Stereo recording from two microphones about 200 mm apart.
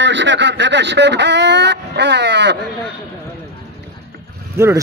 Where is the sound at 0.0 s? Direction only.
65° right (ahead or behind).